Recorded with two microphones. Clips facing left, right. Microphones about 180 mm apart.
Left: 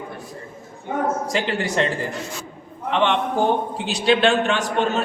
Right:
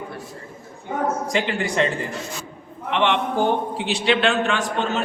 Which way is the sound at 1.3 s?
40° left (ahead or behind).